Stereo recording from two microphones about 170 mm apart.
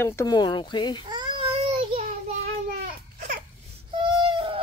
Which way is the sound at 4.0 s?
30° right (ahead or behind).